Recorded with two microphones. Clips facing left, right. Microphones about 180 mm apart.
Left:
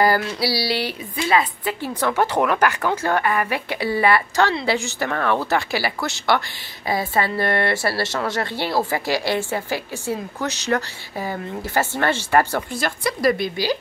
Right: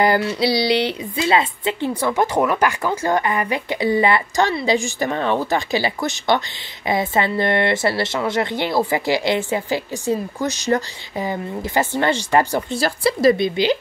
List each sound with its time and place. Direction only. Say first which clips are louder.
0.4 s a woman's voice: right 5 dB; 20° right (ahead or behind)
2.0 s a woman's voice: left 1 dB; 10° right (ahead or behind)
12.7 s a woman's voice: right 5 dB; 30° right (ahead or behind)